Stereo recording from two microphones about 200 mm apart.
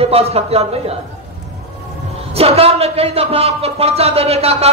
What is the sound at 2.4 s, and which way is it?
A man's voice, 30° right (ahead or behind).